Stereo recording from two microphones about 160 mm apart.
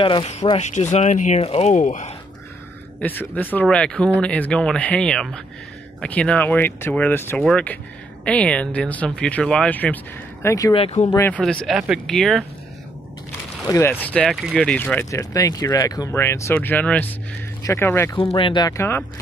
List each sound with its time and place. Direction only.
0.0 s speech: 35° left (ahead or behind)
3.0 s speech: 10° left (ahead or behind)
10.7 s speech: 40° left (ahead or behind)
11.1 s speech: 15° left (ahead or behind)
13.7 s speech: 15° left (ahead or behind)
14.0 s speech: 5° left (ahead or behind)
15.0 s speech: 20° left (ahead or behind)
18.1 s speech: 35° left (ahead or behind); by 19.0 s 15° left (ahead or behind)